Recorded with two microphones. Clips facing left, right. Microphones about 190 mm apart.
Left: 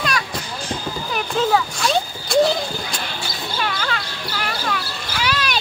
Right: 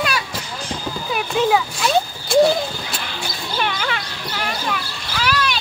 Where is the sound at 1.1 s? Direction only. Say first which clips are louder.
Right 1 dB; 5° right (ahead or behind).